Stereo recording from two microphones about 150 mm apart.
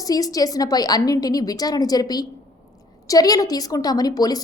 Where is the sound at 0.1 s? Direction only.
25° left (ahead or behind).